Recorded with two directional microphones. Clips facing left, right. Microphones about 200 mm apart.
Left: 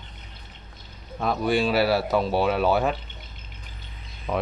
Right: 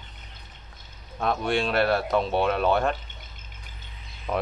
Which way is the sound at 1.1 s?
Centre (ahead or behind).